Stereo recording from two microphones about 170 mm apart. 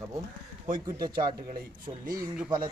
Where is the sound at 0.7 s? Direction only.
25° right (ahead or behind).